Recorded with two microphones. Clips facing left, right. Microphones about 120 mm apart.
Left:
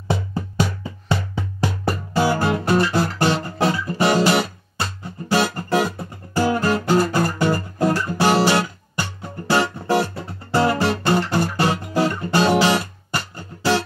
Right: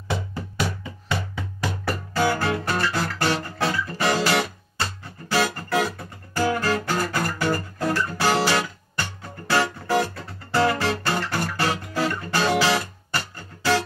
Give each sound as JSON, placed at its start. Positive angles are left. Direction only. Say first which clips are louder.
{"t": 0.3, "sound": "music", "louder": "left 5 dB", "side_deg": 30}